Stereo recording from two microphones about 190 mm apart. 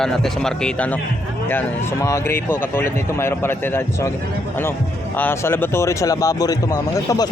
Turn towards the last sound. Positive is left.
turn(degrees=20)  # may be behind; listen again after turning